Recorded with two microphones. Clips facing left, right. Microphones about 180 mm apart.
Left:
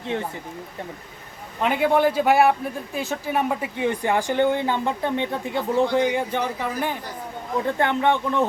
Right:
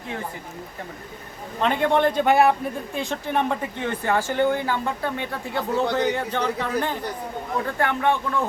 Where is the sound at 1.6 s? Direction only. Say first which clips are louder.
Left 1 dB; 10° left (ahead or behind).